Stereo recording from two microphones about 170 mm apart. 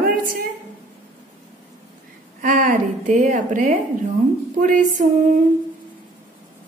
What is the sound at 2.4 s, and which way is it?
A woman's voice, 50° right (ahead or behind).